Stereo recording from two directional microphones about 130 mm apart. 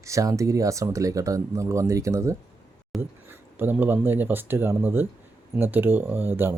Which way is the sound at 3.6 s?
15° right (ahead or behind).